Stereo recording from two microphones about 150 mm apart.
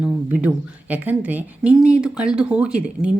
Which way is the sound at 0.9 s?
10° right (ahead or behind).